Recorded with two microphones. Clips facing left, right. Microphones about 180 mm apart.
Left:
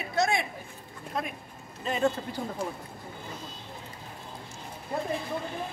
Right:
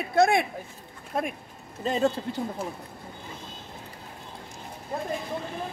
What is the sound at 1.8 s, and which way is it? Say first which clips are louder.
Speech: right 2 dB; 35° right (ahead or behind).